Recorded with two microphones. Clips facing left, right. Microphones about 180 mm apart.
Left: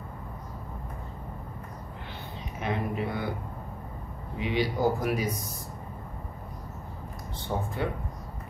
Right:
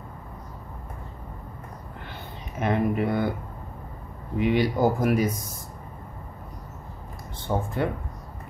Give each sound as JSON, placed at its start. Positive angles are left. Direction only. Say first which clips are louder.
{"t": 2.6, "sound": "speech", "louder": "right 7 dB", "side_deg": -55}
{"t": 4.4, "sound": "speech", "louder": "right 5 dB", "side_deg": -50}
{"t": 7.5, "sound": "speech", "louder": "right 5 dB", "side_deg": -65}